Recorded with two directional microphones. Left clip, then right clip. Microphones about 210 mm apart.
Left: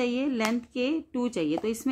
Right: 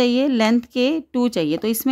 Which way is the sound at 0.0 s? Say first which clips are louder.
Right 10 dB; 50° right (ahead or behind).